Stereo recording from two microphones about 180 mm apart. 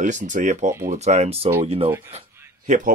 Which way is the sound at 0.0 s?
45° right (ahead or behind).